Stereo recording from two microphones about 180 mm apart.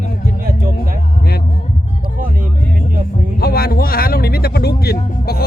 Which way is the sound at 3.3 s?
60° left (ahead or behind).